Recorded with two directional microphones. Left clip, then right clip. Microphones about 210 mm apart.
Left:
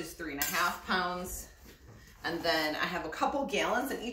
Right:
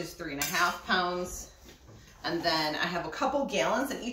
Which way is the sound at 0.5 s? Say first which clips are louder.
Right 3 dB; centre (ahead or behind).